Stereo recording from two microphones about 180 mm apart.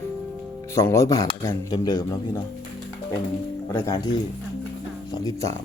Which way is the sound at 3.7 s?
20° left (ahead or behind).